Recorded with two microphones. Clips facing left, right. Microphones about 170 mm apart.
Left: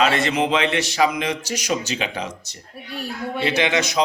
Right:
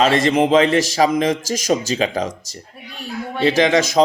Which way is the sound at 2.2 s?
90° right.